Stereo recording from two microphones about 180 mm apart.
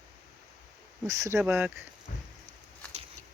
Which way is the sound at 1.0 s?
15° right (ahead or behind).